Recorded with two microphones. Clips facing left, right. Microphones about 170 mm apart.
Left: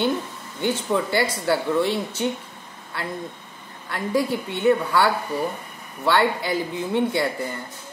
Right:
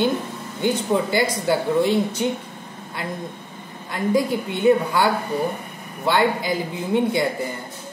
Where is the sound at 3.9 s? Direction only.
15° right (ahead or behind).